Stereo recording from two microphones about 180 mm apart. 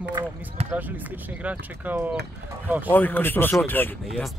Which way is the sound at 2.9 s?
10° left (ahead or behind).